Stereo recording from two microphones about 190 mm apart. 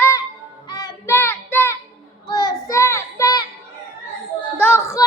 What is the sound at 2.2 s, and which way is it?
Child singing, 20° left (ahead or behind).